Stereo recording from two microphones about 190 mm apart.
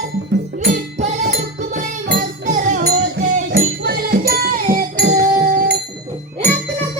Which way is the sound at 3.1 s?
55° right (ahead or behind).